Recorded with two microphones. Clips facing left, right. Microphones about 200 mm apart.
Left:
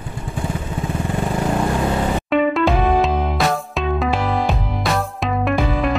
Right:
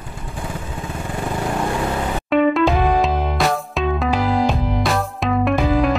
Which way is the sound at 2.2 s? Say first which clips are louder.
Right 3 dB; centre (ahead or behind).